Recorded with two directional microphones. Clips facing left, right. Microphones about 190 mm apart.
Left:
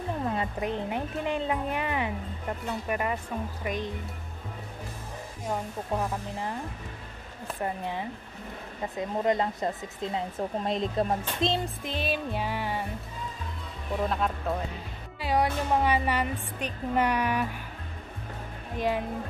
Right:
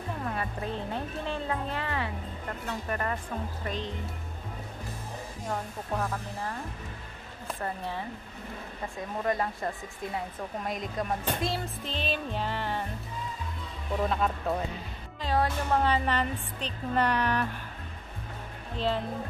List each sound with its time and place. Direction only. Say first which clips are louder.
0.2 s a woman's voice: left 4 dB; 20° left (ahead or behind)
5.5 s a woman's voice: left 3 dB; 15° left (ahead or behind)
7.6 s a woman's voice: left 3 dB; 15° left (ahead or behind)
14.0 s speech: even; centre (ahead or behind)
15.1 s a woman's voice: left 2 dB; 10° left (ahead or behind)
18.8 s a woman's voice: left 1 dB; 15° left (ahead or behind)